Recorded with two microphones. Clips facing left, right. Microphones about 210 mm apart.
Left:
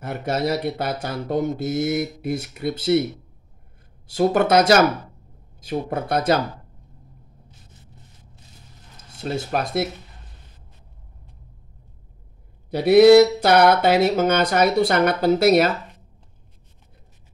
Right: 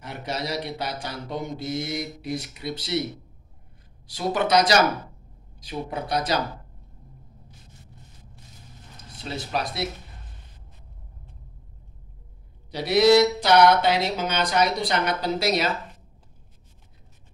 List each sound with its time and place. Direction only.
0.0 s speech: 50° left (ahead or behind)
4.1 s speech: 50° left (ahead or behind)
9.5 s speech: 50° left (ahead or behind)
12.7 s mantra: 55° left (ahead or behind)
13.8 s speech: 50° left (ahead or behind)
14.9 s mantra: 55° left (ahead or behind)